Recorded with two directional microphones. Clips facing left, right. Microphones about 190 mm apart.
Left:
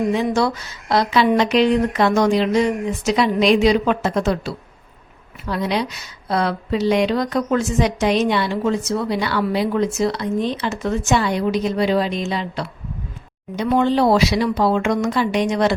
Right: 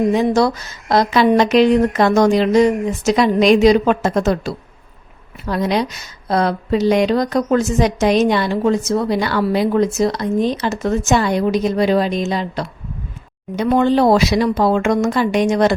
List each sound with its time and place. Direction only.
0.1 s speech: 40° right (ahead or behind)